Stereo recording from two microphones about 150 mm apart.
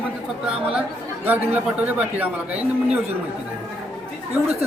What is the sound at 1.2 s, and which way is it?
Speech, 10° right (ahead or behind).